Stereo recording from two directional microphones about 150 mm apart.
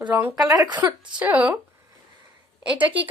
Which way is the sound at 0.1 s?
10° right (ahead or behind).